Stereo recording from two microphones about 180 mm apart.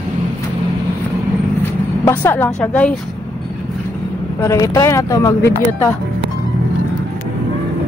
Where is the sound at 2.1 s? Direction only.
10° left (ahead or behind).